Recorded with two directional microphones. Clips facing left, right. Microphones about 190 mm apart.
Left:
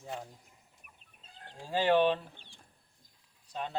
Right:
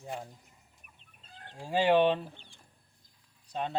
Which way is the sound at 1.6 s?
15° right (ahead or behind).